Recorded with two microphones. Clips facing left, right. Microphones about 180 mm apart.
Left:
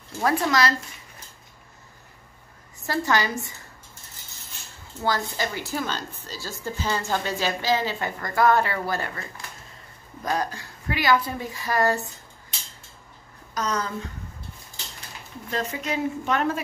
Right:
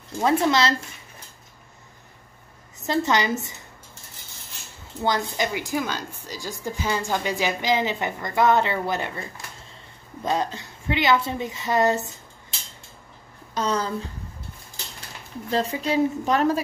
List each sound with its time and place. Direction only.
0.2 s a woman's voice: 25° right (ahead or behind)
2.8 s a woman's voice: 20° right (ahead or behind)
5.0 s a woman's voice: 20° right (ahead or behind)
13.6 s a woman's voice: 30° right (ahead or behind)
15.5 s a woman's voice: 30° right (ahead or behind)